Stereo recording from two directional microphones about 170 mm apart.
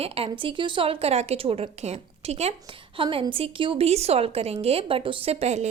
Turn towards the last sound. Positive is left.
turn(degrees=-40)  # may be behind; listen again after turning